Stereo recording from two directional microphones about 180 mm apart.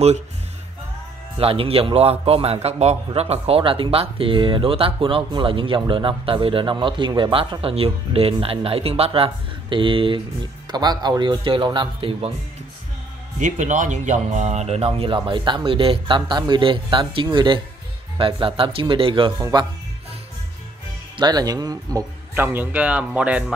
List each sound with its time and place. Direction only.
1.4 s a man's voice: 30° right (ahead or behind)
13.4 s a man's voice: 45° right (ahead or behind); by 19.7 s 25° right (ahead or behind)
21.2 s a man's voice: 20° right (ahead or behind)
22.3 s speech: 10° right (ahead or behind)